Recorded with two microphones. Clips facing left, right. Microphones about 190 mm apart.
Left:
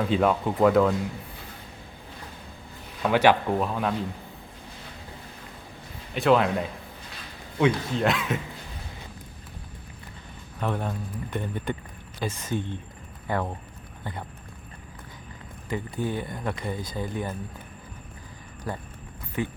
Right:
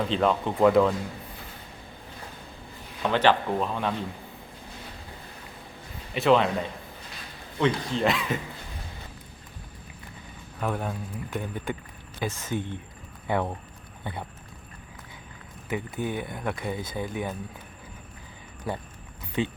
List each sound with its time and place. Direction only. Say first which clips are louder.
0.0 s a man's voice: left 2 dB; 5° left (ahead or behind)
3.0 s a man's voice: left 2 dB; 10° left (ahead or behind)
6.1 s a man's voice: even; centre (ahead or behind)
10.6 s a man's voice: left 1 dB; 5° right (ahead or behind)
14.0 s a sound: right 1 dB; 10° right (ahead or behind)
15.7 s speech: left 1 dB; 15° right (ahead or behind)
16.2 s a man's voice: even; 5° right (ahead or behind)
16.7 s speech: even; 20° right (ahead or behind)
18.7 s a man's voice: right 1 dB; centre (ahead or behind)
19.4 s speech: right 2 dB; 20° right (ahead or behind)